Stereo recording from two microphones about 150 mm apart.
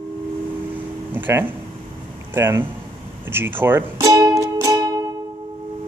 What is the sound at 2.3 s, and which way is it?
Speech, 15° right (ahead or behind).